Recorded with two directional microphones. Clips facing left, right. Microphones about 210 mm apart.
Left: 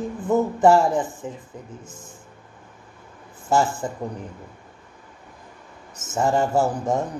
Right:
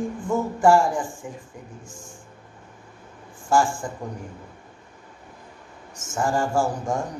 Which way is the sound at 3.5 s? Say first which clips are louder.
Even; 20° left (ahead or behind).